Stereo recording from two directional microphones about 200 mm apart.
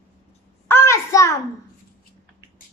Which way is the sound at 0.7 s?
15° left (ahead or behind).